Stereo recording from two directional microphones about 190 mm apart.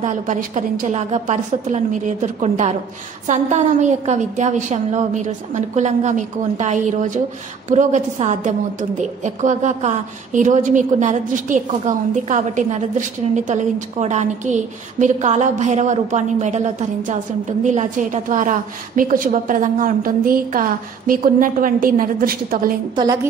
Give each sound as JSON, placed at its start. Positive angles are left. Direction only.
{"t": 0.0, "sound": "a woman's voice", "side_deg": -40}